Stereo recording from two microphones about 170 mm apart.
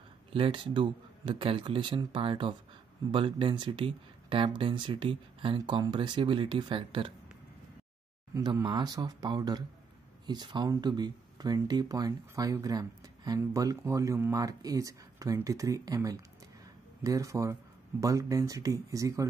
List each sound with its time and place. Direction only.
0.3 s speech: 30° right (ahead or behind)
8.4 s speech: 20° right (ahead or behind)